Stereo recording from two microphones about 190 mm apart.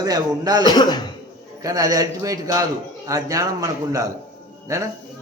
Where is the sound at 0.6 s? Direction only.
20° left (ahead or behind).